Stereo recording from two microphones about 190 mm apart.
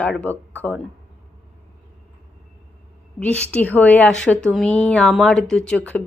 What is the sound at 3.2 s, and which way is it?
Speech, 10° left (ahead or behind).